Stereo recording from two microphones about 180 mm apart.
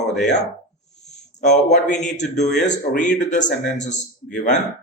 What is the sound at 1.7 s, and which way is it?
Speech, 40° left (ahead or behind).